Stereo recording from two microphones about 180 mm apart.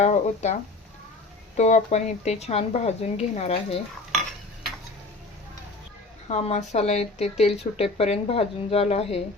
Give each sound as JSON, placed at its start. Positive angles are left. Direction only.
{"t": 0.0, "sound": "speech", "side_deg": 40}
{"t": 1.5, "sound": "speech", "side_deg": 40}
{"t": 6.2, "sound": "speech", "side_deg": 40}